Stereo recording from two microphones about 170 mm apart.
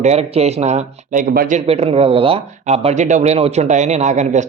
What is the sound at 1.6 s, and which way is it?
Speech, 35° right (ahead or behind).